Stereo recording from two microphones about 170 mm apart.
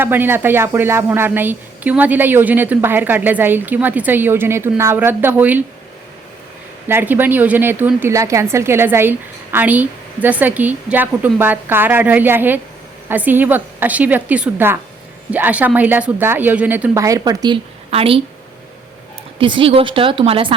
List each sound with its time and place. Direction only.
0.0 s a woman's voice: 10° right (ahead or behind)
6.8 s a woman's voice: 10° right (ahead or behind)
17.9 s a woman's voice: 35° right (ahead or behind)
19.4 s a woman's voice: 30° right (ahead or behind)